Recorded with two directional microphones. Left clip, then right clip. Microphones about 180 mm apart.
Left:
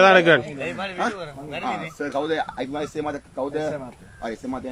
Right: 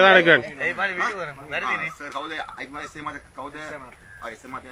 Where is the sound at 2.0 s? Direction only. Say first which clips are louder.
Left 7 dB; 55° left (ahead or behind).